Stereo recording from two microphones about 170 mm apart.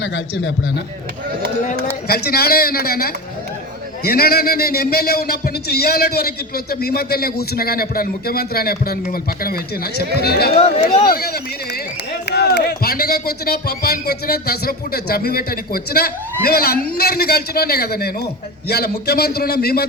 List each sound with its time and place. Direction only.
2.0 s a man's voice: 65° left (ahead or behind)
10.6 s speech: 40° left (ahead or behind)
11.0 s a man's voice: 65° left (ahead or behind)